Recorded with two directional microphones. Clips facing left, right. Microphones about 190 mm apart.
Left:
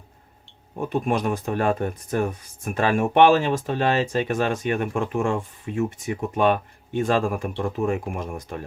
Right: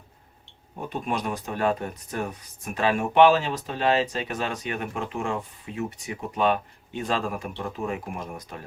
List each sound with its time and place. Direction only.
1.0 s speech: 45° left (ahead or behind)